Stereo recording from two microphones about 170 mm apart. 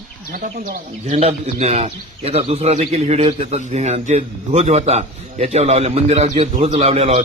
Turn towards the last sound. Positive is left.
turn(degrees=-35)  # may be behind; listen again after turning